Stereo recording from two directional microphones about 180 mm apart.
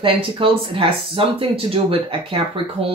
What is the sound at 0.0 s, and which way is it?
Speech, 30° right (ahead or behind).